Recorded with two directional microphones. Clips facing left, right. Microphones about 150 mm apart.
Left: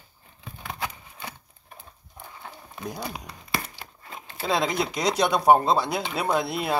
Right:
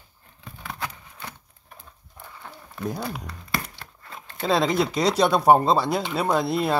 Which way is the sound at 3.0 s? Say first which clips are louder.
Right 3 dB; 20° left (ahead or behind).